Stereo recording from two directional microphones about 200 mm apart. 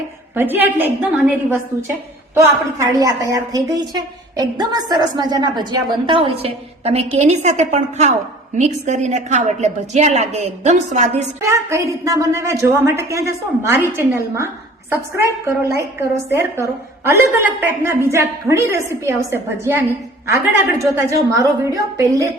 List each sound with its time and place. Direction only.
0.3 s a woman's voice: 10° right (ahead or behind); by 11.1 s 35° right (ahead or behind)
11.4 s a woman's voice: 15° right (ahead or behind)
21.4 s a woman's voice: 15° right (ahead or behind)